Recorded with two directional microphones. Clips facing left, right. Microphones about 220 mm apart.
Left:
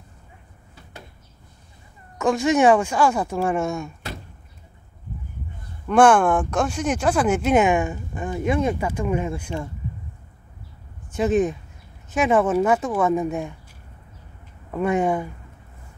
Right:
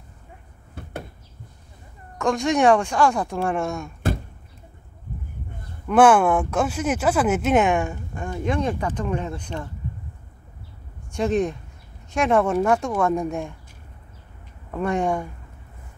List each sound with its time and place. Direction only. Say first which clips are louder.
0.8 s a sound: right 11 dB; 55° right (ahead or behind)
2.1 s speech: left 2 dB; 5° left (ahead or behind)
5.9 s speech: even; 5° right (ahead or behind)
11.1 s speech: left 2 dB; 5° left (ahead or behind)
14.7 s speech: left 2 dB; 5° left (ahead or behind)